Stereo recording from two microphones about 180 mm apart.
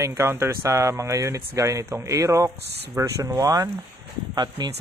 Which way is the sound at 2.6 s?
70° right (ahead or behind).